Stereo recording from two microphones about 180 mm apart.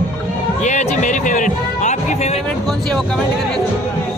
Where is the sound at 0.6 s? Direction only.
40° left (ahead or behind).